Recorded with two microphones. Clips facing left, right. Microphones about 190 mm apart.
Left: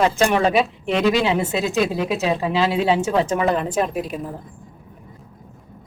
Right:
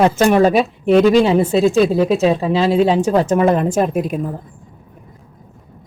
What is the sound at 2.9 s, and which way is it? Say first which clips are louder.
A woman's voice: right 4 dB; 40° right (ahead or behind).